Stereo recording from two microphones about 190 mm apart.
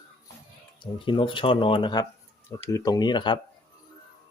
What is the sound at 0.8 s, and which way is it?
Speech, 25° left (ahead or behind).